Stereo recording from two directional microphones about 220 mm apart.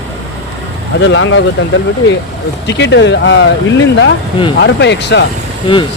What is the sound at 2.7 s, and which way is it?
Speech, 55° left (ahead or behind).